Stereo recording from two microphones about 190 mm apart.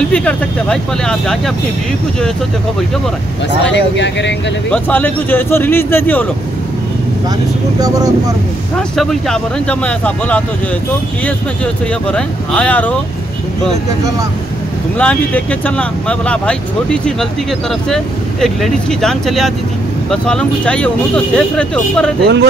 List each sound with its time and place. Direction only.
0.1 s speech: 5° left (ahead or behind)
3.6 s speech: 70° left (ahead or behind)
4.6 s speech: 5° left (ahead or behind)
7.8 s speech: 20° right (ahead or behind)
8.7 s speech: centre (ahead or behind)
15.0 s speech: 5° left (ahead or behind)
22.2 s speech: 65° right (ahead or behind)